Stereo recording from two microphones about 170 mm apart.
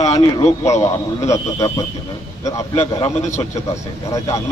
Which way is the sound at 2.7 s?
40° left (ahead or behind).